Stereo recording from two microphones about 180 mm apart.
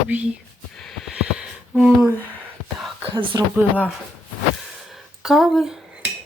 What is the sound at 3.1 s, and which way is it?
Speech, 25° right (ahead or behind).